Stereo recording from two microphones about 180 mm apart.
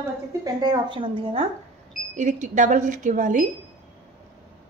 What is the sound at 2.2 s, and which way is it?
A woman's voice, 40° right (ahead or behind).